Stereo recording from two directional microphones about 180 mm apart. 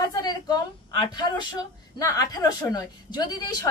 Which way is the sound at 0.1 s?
20° left (ahead or behind).